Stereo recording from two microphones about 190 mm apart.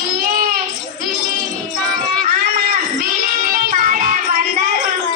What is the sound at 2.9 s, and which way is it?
Music, 50° right (ahead or behind).